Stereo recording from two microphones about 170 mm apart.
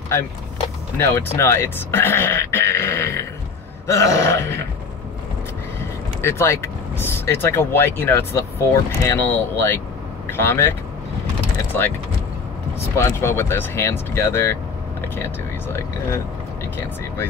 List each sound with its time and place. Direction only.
0.9 s speech: 15° left (ahead or behind)
3.8 s burping: 15° left (ahead or behind)
6.2 s speech: 15° left (ahead or behind)
12.9 s speech: 15° left (ahead or behind)